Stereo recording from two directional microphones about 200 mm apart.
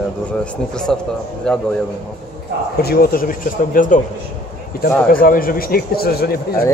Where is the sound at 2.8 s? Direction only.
50° left (ahead or behind).